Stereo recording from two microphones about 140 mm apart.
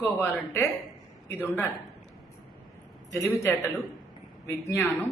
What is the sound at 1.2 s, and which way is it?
Speech, 15° left (ahead or behind).